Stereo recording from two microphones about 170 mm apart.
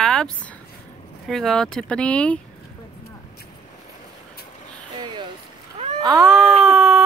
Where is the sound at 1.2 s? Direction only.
Centre (ahead or behind).